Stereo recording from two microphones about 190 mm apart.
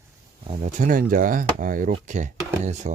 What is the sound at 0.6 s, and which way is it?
Speech, 45° right (ahead or behind).